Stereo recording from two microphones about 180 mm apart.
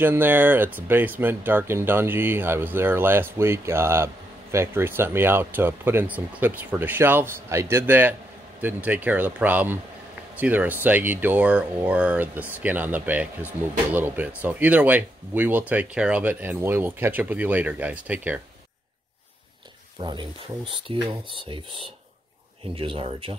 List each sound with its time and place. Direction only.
0.0 s speech: 10° right (ahead or behind)
20.0 s speech: 25° right (ahead or behind)